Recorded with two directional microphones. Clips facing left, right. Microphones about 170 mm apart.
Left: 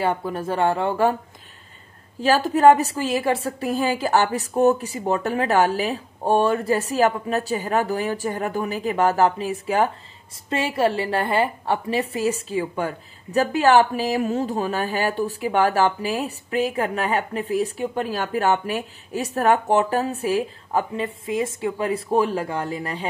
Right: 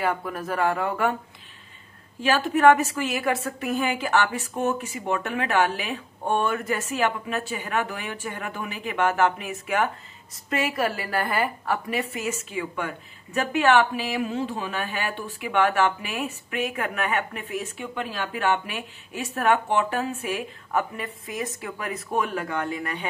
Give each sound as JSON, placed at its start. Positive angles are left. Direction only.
{"t": 0.0, "sound": "speech", "side_deg": 30}
{"t": 2.2, "sound": "a woman's voice", "side_deg": 35}